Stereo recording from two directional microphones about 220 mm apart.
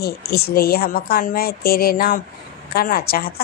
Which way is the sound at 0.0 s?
45° left (ahead or behind).